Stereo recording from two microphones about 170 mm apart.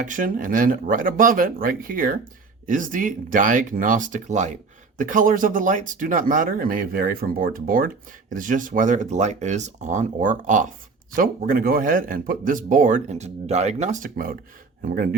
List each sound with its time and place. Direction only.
0.0 s speech: 50° right (ahead or behind)